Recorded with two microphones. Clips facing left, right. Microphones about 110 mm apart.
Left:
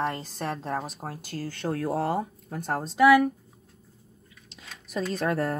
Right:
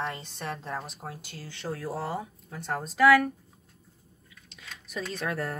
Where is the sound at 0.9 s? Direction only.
40° left (ahead or behind).